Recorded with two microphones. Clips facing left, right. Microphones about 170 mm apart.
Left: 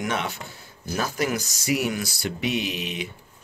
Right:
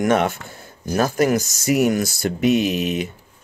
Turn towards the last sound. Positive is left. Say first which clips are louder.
# right 9 dB
turn(degrees=-45)  # may be behind; listen again after turning